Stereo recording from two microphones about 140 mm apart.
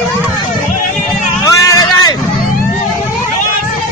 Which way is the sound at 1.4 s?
25° left (ahead or behind).